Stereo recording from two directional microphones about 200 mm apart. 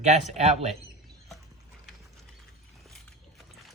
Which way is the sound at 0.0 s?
35° right (ahead or behind).